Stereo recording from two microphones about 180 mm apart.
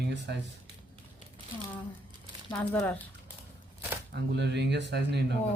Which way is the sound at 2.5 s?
10° left (ahead or behind).